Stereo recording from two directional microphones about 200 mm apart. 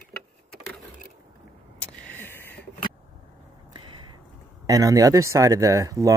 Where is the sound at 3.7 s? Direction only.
20° right (ahead or behind).